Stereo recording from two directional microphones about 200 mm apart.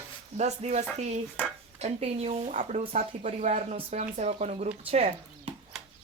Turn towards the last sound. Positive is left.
turn(degrees=-30)  # may be behind; listen again after turning